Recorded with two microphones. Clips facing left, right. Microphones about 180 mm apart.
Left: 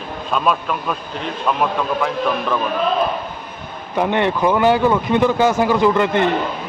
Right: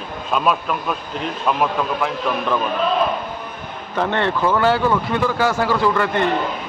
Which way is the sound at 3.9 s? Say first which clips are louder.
Left 2 dB; 15° left (ahead or behind).